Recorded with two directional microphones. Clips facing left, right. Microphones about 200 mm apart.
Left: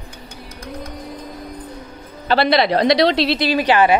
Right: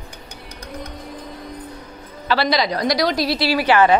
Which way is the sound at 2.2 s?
55° left (ahead or behind).